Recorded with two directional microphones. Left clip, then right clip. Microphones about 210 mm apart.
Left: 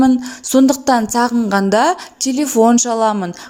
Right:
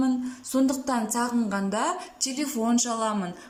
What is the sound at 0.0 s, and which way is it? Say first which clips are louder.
A woman's voice: left 13 dB; 35° left (ahead or behind).